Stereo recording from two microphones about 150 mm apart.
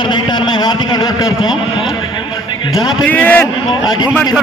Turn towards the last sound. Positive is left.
turn(degrees=10)  # may be behind; listen again after turning